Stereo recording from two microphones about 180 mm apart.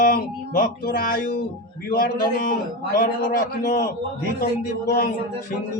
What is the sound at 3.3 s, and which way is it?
Music, 55° left (ahead or behind).